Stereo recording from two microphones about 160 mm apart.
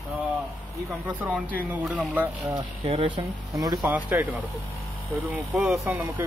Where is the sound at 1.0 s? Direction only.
10° right (ahead or behind).